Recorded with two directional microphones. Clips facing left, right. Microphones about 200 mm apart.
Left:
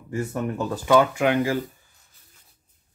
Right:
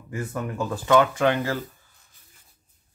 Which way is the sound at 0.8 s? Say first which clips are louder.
Left 1 dB; 10° left (ahead or behind).